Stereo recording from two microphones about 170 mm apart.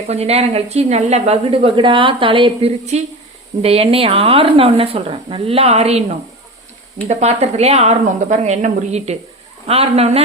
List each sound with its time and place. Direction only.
0.1 s a woman's voice: 40° right (ahead or behind)